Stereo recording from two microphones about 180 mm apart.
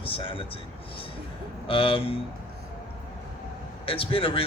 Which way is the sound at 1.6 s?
30° left (ahead or behind).